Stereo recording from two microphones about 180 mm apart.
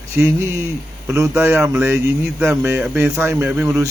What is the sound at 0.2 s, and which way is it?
Mantra, 15° right (ahead or behind).